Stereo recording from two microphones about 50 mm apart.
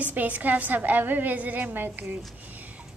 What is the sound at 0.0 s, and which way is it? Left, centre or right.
A woman's voice, right.